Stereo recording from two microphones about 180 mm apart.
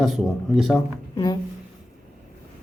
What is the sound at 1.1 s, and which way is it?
Speech, 25° left (ahead or behind).